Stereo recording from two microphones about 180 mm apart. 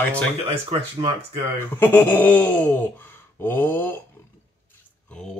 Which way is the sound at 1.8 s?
10° left (ahead or behind).